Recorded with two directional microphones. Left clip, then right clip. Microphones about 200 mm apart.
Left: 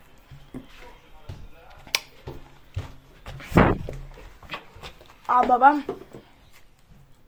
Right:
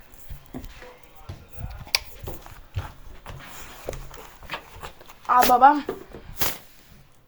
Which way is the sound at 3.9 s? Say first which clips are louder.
Right 4 dB; 30° right (ahead or behind).